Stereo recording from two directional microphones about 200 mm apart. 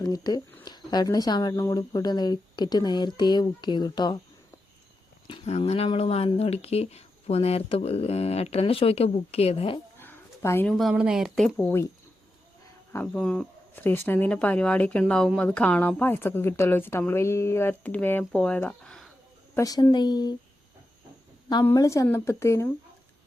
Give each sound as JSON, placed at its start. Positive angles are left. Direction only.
{"t": 0.0, "sound": "speech", "side_deg": 20}
{"t": 5.3, "sound": "speech", "side_deg": 30}
{"t": 10.0, "sound": "a sound", "side_deg": 10}
{"t": 10.7, "sound": "speech", "side_deg": 0}
{"t": 12.9, "sound": "speech", "side_deg": 5}
{"t": 19.5, "sound": "speech", "side_deg": 15}
{"t": 21.5, "sound": "speech", "side_deg": 15}